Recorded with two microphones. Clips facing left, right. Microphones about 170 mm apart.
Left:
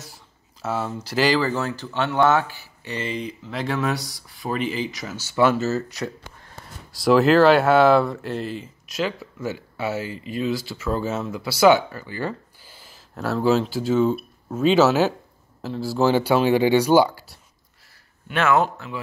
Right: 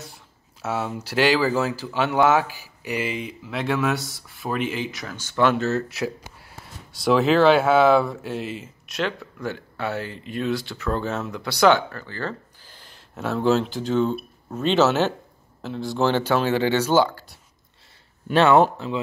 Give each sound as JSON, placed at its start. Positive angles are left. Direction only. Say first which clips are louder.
{"t": 0.0, "sound": "speech", "louder": "right 2 dB", "side_deg": 0}
{"t": 18.3, "sound": "speech", "louder": "right 4 dB", "side_deg": -30}